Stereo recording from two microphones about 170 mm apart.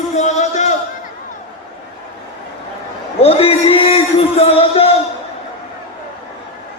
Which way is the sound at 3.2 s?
35° left (ahead or behind).